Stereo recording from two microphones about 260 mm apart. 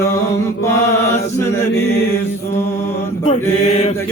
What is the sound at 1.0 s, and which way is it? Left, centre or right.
Mantra, centre.